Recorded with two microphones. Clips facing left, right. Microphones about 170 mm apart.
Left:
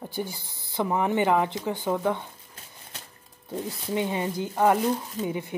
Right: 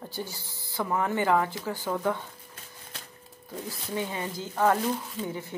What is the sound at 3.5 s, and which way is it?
Speech, 20° left (ahead or behind).